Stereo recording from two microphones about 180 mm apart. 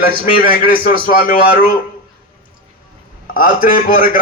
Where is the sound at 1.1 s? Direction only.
50° left (ahead or behind).